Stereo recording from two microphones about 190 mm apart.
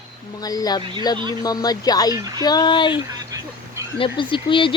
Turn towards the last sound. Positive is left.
turn(degrees=25)  # may be behind; listen again after turning